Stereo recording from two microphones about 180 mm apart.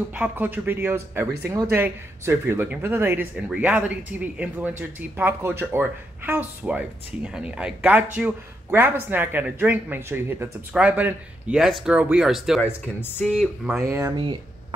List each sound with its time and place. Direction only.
0.1 s speech: 10° right (ahead or behind)
12.6 s speech: 10° left (ahead or behind)
13.8 s speech: 15° right (ahead or behind)